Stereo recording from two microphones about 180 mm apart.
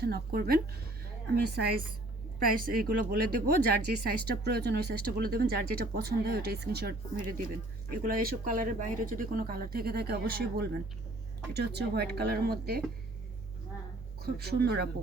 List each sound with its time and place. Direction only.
0.0 s speech: 60° right (ahead or behind)
2.5 s speech: 50° right (ahead or behind)
14.2 s speech: 60° right (ahead or behind)